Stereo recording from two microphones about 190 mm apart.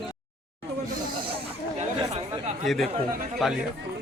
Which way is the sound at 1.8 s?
35° right (ahead or behind).